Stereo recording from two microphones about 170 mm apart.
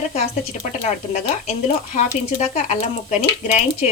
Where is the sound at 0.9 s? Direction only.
40° left (ahead or behind).